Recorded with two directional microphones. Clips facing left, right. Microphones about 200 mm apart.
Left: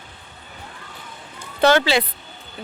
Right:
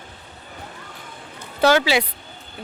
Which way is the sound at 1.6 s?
5° right (ahead or behind).